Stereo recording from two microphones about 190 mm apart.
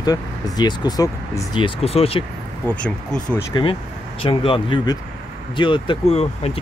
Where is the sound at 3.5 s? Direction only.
25° left (ahead or behind).